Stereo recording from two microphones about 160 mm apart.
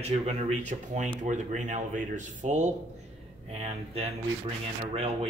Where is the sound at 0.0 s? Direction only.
45° right (ahead or behind).